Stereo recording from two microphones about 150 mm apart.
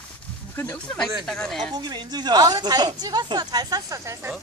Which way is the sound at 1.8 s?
30° right (ahead or behind).